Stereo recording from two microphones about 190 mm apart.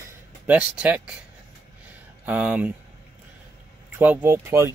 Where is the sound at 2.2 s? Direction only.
5° right (ahead or behind).